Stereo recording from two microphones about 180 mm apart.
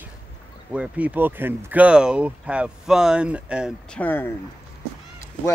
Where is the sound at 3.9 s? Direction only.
10° left (ahead or behind).